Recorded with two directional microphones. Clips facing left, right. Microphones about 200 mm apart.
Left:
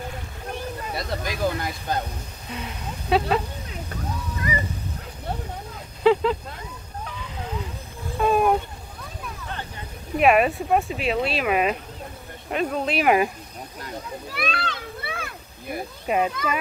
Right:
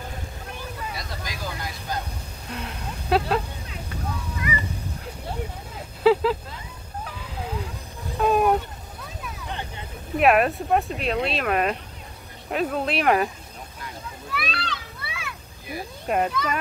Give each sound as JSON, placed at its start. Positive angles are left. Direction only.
{"t": 0.9, "sound": "speech", "side_deg": 60}
{"t": 2.5, "sound": "speech", "side_deg": 5}
{"t": 6.0, "sound": "a sound", "side_deg": -5}
{"t": 10.1, "sound": "speech", "side_deg": 0}
{"t": 13.7, "sound": "a sound", "side_deg": 40}
{"t": 16.1, "sound": "speech", "side_deg": 5}